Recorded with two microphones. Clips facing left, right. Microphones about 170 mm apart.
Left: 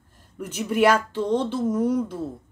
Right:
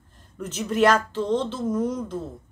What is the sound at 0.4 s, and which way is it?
Speech, 10° left (ahead or behind).